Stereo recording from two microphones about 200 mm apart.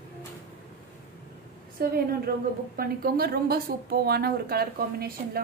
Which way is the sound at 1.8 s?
50° right (ahead or behind).